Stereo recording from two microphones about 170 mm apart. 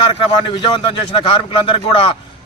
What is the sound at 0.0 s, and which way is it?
A man's voice, 30° left (ahead or behind).